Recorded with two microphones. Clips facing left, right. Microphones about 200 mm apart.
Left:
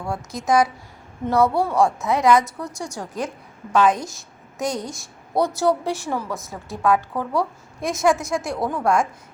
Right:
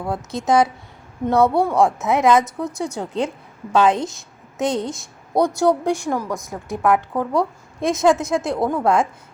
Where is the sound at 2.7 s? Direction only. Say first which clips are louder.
Right 6 dB; 60° right (ahead or behind).